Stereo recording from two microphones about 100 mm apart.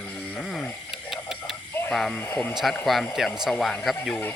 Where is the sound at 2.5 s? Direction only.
Centre (ahead or behind).